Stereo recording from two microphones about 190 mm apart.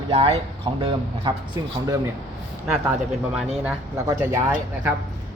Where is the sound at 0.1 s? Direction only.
30° right (ahead or behind).